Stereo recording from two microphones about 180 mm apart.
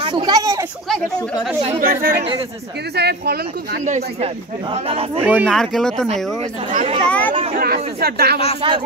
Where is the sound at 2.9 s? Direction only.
65° right (ahead or behind).